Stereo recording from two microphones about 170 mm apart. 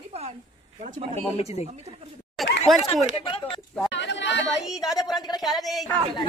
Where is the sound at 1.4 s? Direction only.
40° left (ahead or behind).